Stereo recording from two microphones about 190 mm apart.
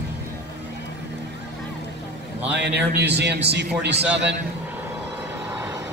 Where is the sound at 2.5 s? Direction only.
60° right (ahead or behind).